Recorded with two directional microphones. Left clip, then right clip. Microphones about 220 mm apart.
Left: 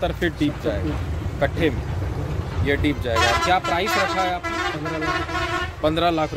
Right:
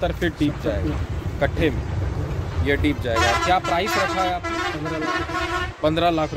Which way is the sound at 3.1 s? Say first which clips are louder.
Left 1 dB; 45° left (ahead or behind).